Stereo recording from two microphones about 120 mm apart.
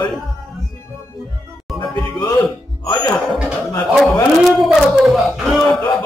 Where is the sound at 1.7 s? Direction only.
Centre (ahead or behind).